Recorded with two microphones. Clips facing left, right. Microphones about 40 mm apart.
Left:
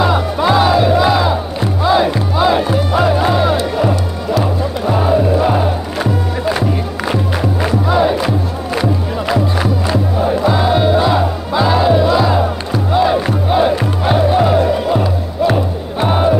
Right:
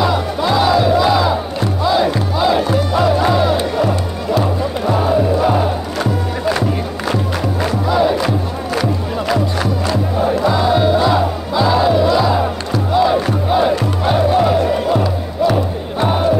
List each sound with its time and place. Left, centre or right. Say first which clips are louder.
0.0 s music: left 2 dB; centre
7.6 s music: left 1 dB; centre